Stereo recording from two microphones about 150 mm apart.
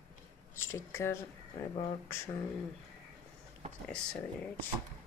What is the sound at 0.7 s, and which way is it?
Speech, 20° left (ahead or behind).